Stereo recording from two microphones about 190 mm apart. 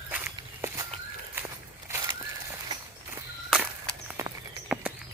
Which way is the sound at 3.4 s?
Centre (ahead or behind).